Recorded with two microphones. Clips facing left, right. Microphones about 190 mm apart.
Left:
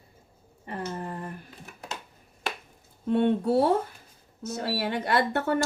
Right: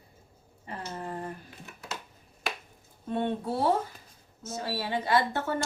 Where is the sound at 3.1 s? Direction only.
70° left (ahead or behind).